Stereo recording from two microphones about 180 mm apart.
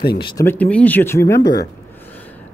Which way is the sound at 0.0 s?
60° left (ahead or behind).